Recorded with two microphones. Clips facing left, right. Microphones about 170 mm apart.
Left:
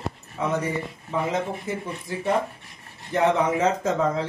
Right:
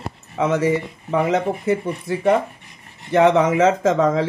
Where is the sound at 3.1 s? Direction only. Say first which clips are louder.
Right 6 dB; 90° right.